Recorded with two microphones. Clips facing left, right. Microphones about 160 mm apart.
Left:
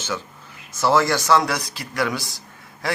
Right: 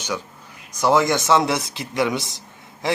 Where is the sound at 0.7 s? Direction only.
15° right (ahead or behind).